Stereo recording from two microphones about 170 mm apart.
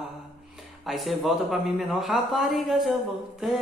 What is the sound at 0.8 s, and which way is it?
Speech, centre (ahead or behind).